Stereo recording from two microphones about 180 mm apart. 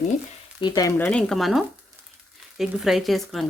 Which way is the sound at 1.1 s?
5° left (ahead or behind).